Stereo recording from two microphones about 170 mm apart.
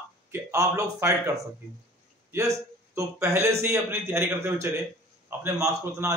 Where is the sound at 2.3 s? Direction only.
20° right (ahead or behind).